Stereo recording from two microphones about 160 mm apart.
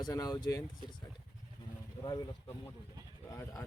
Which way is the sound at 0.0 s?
25° left (ahead or behind).